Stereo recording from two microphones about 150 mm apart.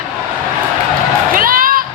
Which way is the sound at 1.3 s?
70° right (ahead or behind).